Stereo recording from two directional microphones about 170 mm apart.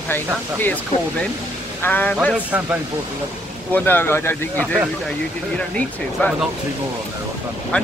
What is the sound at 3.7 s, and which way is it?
Speech, 10° left (ahead or behind).